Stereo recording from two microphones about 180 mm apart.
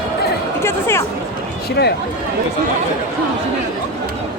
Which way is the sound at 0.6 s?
15° left (ahead or behind).